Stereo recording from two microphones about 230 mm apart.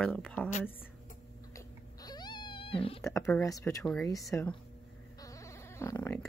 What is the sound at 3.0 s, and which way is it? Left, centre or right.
Speech, centre.